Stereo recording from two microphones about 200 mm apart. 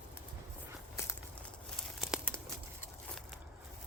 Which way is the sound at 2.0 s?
5° right (ahead or behind).